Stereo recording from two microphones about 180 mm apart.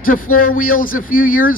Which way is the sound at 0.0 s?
50° left (ahead or behind).